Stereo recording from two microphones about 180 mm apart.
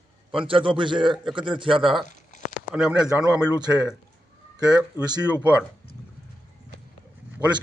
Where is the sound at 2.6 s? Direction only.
5° right (ahead or behind).